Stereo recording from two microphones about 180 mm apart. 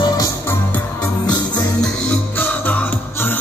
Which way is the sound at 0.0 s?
20° left (ahead or behind).